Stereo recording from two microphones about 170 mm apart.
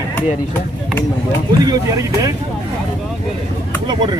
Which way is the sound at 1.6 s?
20° right (ahead or behind).